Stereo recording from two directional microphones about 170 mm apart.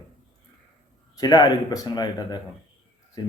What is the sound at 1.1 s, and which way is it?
A man's voice, 20° left (ahead or behind).